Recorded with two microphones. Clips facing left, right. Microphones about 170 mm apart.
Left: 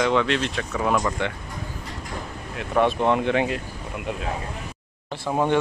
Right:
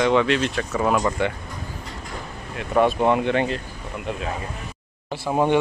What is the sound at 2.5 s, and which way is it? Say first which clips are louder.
Speech: right 2 dB; 5° right (ahead or behind).